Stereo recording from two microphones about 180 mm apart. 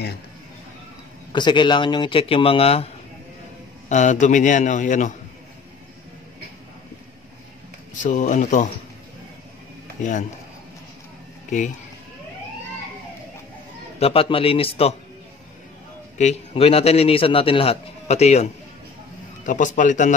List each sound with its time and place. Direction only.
1.3 s speech: 25° left (ahead or behind)
3.9 s a man's voice: 40° left (ahead or behind)
7.9 s a man's voice: 45° left (ahead or behind)
13.9 s a man's voice: 35° left (ahead or behind)
16.2 s a man's voice: 35° left (ahead or behind)